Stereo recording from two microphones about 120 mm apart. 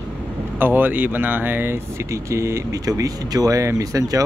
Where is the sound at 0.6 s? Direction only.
15° right (ahead or behind).